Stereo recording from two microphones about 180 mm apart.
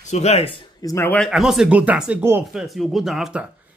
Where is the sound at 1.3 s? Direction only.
Centre (ahead or behind).